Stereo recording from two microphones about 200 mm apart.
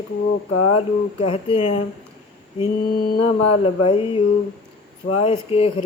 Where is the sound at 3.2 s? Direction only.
30° left (ahead or behind).